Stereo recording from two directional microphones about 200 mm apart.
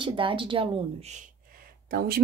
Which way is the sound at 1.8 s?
50° right (ahead or behind).